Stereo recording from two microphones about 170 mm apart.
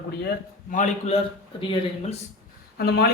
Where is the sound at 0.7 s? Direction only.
45° left (ahead or behind).